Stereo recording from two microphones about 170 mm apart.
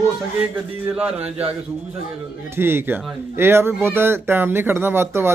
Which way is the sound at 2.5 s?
15° right (ahead or behind).